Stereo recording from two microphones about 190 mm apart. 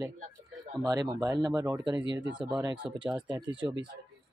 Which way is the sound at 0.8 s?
20° right (ahead or behind).